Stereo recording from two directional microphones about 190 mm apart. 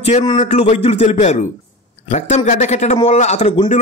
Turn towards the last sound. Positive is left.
turn(degrees=35)  # may be behind; listen again after turning